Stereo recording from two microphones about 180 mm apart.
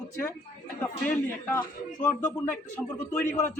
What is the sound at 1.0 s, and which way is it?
A man's voice, 10° left (ahead or behind).